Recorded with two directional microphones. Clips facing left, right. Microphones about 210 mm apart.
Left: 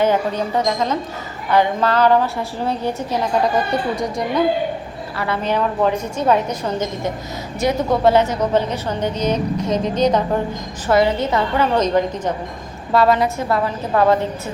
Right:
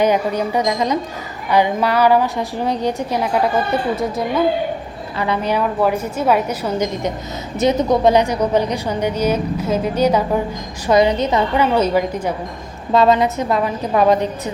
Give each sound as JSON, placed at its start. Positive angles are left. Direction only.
{"t": 0.0, "sound": "a woman's voice", "side_deg": -15}
{"t": 3.7, "sound": "speech", "side_deg": -5}
{"t": 5.1, "sound": "a woman's voice", "side_deg": -15}
{"t": 12.9, "sound": "a woman's voice", "side_deg": -20}